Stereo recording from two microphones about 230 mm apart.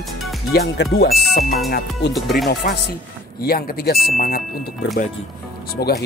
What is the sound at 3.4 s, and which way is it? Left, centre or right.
Speech, left.